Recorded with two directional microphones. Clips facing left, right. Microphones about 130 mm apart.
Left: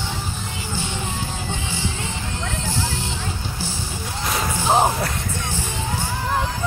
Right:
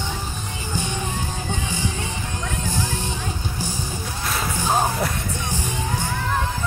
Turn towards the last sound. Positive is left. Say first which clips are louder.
# left 3 dB
turn(degrees=20)  # may be behind; listen again after turning